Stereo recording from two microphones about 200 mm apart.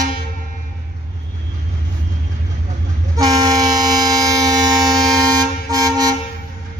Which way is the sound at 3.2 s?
20° right (ahead or behind).